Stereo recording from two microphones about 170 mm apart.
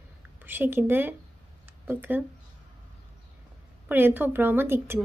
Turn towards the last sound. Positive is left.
turn(degrees=-15)  # may be behind; listen again after turning